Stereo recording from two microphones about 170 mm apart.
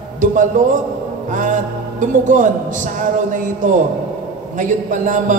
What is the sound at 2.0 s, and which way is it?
Speech, 50° right (ahead or behind).